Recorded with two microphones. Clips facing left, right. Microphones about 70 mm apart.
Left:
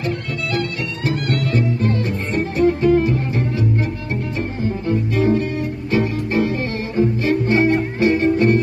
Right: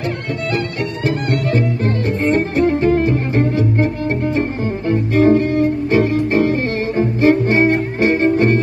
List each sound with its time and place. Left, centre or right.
0.5 s music: right